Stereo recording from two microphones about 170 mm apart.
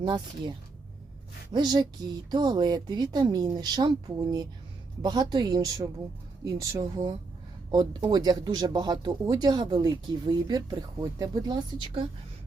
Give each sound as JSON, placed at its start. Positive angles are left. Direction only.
{"t": 0.0, "sound": "speech", "side_deg": -30}
{"t": 1.5, "sound": "speech", "side_deg": -25}